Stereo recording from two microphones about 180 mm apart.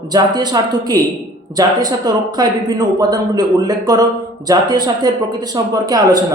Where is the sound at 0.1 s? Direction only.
20° right (ahead or behind).